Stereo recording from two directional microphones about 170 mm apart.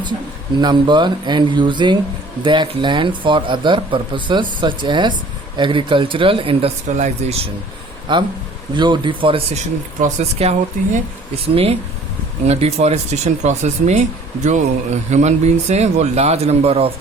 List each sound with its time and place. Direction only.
0.6 s speech: 25° right (ahead or behind)
8.1 s speech: 25° right (ahead or behind)
10.0 s speech: 40° right (ahead or behind)